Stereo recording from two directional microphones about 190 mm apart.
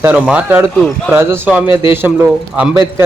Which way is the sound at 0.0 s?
10° right (ahead or behind).